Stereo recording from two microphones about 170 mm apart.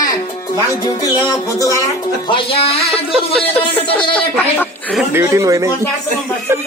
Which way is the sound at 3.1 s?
5° left (ahead or behind).